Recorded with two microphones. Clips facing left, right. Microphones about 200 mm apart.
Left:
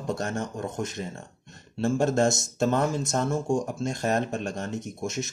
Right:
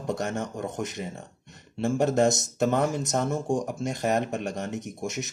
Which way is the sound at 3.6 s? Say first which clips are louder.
Even; 15° right (ahead or behind).